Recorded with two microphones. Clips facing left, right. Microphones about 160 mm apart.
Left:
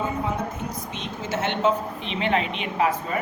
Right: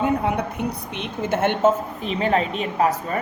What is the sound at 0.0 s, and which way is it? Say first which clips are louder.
A woman's voice: right 5 dB; 65° right (ahead or behind).